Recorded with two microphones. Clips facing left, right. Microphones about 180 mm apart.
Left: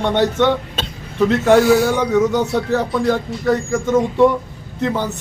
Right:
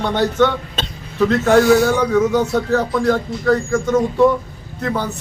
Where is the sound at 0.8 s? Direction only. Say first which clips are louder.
Even; 10° left (ahead or behind).